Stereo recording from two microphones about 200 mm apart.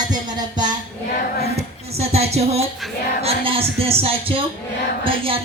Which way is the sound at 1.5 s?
30° right (ahead or behind).